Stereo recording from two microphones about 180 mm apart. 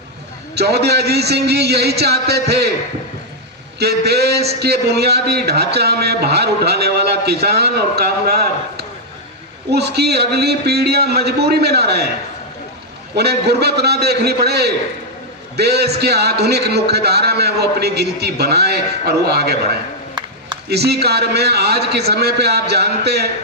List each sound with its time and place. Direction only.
0.5 s a man's voice: 65° right (ahead or behind)
3.8 s a man's voice: 65° right (ahead or behind)
9.6 s a man's voice: 65° right (ahead or behind)
13.1 s a man's voice: 65° right (ahead or behind)
20.7 s a man's voice: 65° right (ahead or behind)